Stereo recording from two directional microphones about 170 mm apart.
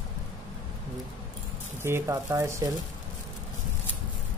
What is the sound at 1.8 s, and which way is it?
Speech, 15° right (ahead or behind).